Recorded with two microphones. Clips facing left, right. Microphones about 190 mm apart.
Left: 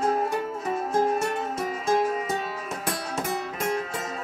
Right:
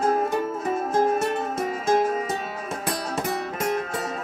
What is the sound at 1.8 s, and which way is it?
Music, 40° right (ahead or behind).